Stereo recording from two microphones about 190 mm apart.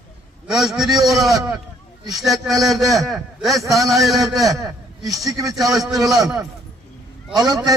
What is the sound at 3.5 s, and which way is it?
Speech, 20° right (ahead or behind).